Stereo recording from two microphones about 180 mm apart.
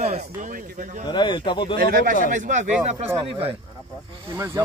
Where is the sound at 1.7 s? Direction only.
55° right (ahead or behind).